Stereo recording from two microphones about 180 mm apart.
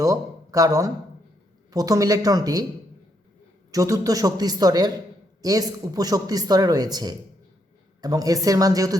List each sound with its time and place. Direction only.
0.0 s speech: 20° right (ahead or behind)
3.7 s speech: 20° right (ahead or behind)